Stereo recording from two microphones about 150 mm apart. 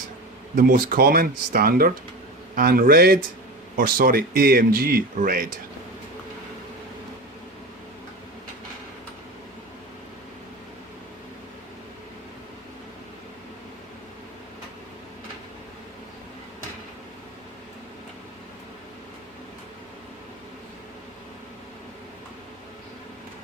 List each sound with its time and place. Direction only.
0.5 s speech: 65° right (ahead or behind); by 3.2 s 85° right
3.8 s speech: 70° right (ahead or behind)